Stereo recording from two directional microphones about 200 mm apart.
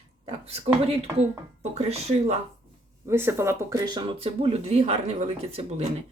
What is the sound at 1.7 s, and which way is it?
Speech, 30° right (ahead or behind).